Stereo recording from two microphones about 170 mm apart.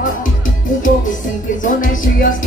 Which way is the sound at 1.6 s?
50° left (ahead or behind).